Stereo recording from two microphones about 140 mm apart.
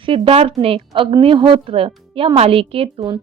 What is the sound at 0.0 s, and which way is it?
Speech, 40° right (ahead or behind).